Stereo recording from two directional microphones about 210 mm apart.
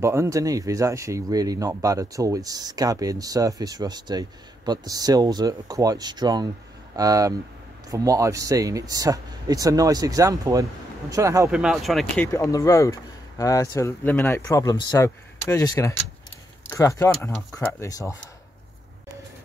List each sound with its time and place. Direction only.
0.0 s speech: 15° right (ahead or behind)
12.3 s speech: 15° left (ahead or behind)